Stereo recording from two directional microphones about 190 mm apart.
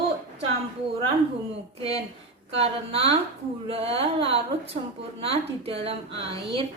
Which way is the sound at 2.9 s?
30° right (ahead or behind).